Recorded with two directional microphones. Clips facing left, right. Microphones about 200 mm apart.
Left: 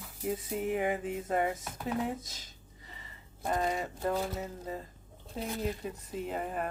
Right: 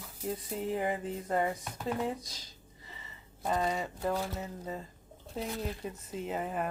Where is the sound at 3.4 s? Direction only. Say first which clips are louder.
Even; centre (ahead or behind).